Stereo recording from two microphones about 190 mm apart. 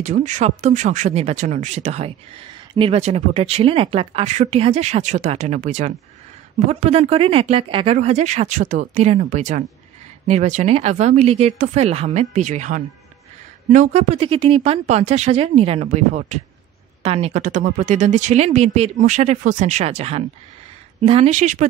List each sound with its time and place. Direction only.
0.0 s speech: 40° right (ahead or behind)